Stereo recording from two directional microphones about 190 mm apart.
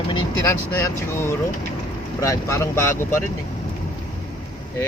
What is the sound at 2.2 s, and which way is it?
Speech, 15° left (ahead or behind).